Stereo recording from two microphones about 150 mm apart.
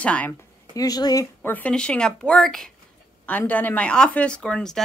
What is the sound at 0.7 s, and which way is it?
Speech, 25° left (ahead or behind).